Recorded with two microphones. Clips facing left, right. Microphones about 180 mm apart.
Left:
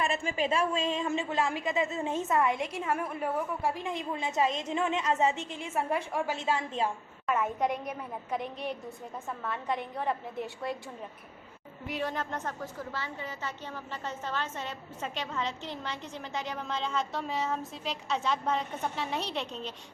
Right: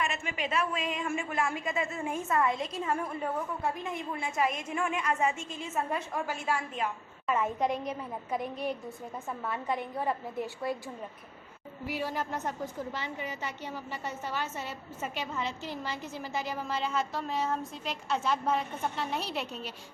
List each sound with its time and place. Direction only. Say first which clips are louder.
0.0 s a woman's voice: left 4 dB; 30° left (ahead or behind); by 2.6 s 15° left (ahead or behind)
2.8 s a woman's voice: even; 5° left (ahead or behind)
3.8 s a woman's voice: left 2 dB; 20° left (ahead or behind)
7.3 s a woman's voice: even; centre (ahead or behind)
11.9 s a woman's voice: even; 5° right (ahead or behind)